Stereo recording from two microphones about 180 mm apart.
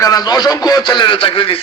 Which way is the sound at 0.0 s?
20° left (ahead or behind).